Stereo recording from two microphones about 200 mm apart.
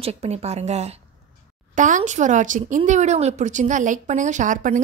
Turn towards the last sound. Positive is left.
turn(degrees=-40)  # may be behind; listen again after turning